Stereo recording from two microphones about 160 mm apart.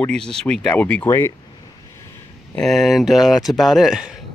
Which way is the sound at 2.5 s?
Centre (ahead or behind).